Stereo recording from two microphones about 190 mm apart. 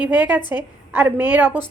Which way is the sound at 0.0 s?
10° right (ahead or behind).